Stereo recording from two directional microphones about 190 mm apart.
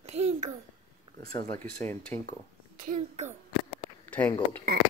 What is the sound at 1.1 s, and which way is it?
Speech, 20° left (ahead or behind).